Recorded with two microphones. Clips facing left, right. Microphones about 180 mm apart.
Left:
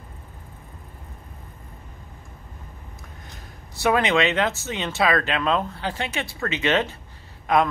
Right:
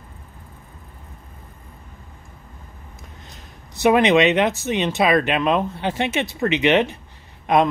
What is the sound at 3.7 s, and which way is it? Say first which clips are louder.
A man's voice: right 5 dB; 20° right (ahead or behind).